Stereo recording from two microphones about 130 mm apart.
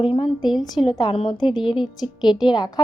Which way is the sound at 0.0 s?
40° left (ahead or behind).